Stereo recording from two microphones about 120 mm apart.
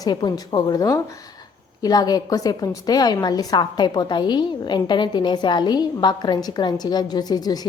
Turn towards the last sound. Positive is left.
turn(degrees=35)  # may be behind; listen again after turning